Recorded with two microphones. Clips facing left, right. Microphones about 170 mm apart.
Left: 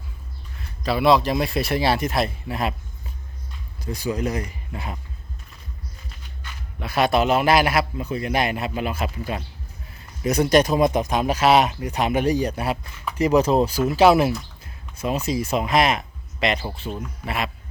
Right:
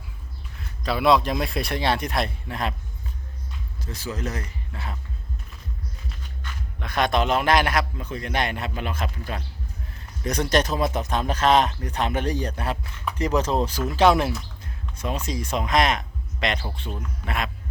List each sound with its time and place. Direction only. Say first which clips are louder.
0.9 s speech: left 2 dB; centre (ahead or behind)
3.8 s speech: left 6 dB; 15° left (ahead or behind)
6.4 s speech: left 3 dB; 5° left (ahead or behind)